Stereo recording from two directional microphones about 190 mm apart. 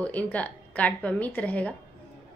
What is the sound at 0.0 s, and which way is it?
A woman's voice, 5° left (ahead or behind).